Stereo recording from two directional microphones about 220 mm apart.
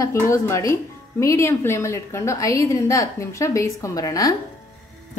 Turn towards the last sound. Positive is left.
turn(degrees=15)  # may be behind; listen again after turning